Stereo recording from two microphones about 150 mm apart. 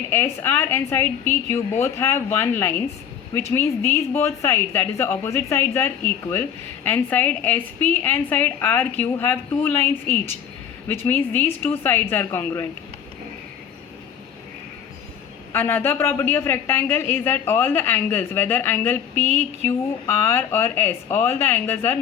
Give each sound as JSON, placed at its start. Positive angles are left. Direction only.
{"t": 0.1, "sound": "a woman's voice", "side_deg": 15}
{"t": 15.5, "sound": "a woman's voice", "side_deg": 15}